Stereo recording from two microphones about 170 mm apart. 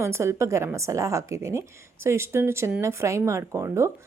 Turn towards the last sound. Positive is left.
turn(degrees=-15)  # may be behind; listen again after turning